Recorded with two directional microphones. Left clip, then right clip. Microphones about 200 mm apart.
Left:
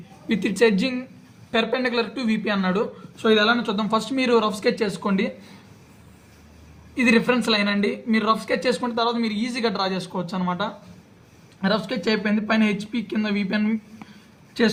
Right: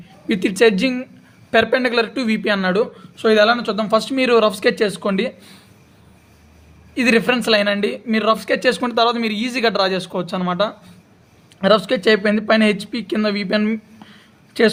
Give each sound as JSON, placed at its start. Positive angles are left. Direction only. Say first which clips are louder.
{"t": 0.3, "sound": "speech", "louder": "right 5 dB", "side_deg": -35}
{"t": 6.9, "sound": "speech", "louder": "right 4 dB", "side_deg": -35}